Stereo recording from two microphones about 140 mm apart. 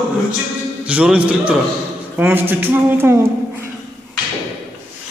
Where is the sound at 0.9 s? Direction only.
10° right (ahead or behind).